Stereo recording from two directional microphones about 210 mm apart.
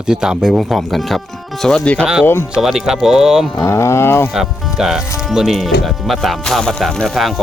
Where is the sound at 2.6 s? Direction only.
Centre (ahead or behind).